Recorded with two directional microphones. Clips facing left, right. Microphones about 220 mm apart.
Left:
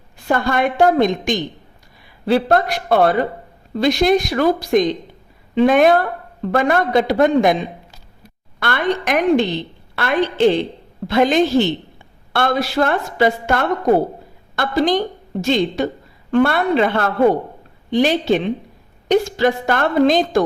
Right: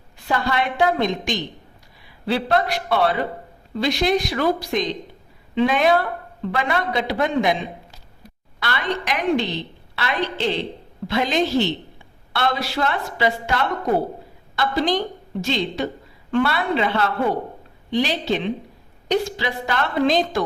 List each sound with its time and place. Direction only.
0.3 s speech: 50° left (ahead or behind)
8.5 s a woman's voice: 50° left (ahead or behind)